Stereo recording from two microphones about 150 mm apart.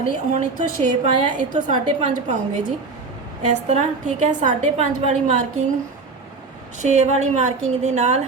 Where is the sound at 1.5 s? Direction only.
55° right (ahead or behind).